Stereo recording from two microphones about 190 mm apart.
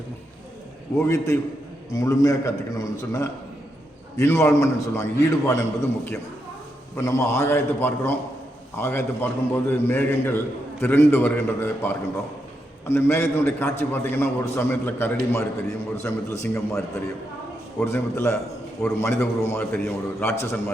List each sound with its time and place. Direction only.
1.0 s a man's voice: 15° left (ahead or behind)
17.7 s a man's voice: 15° left (ahead or behind)